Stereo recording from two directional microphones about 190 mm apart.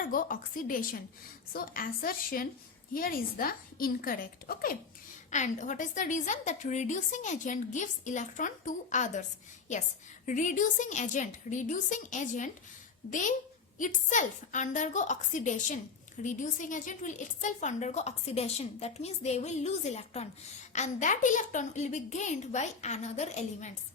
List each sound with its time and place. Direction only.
0.1 s a woman's voice: 45° left (ahead or behind)
10.2 s a woman's voice: 40° left (ahead or behind)